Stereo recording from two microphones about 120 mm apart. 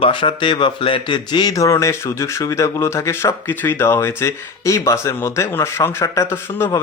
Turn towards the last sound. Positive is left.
turn(degrees=20)  # may be behind; listen again after turning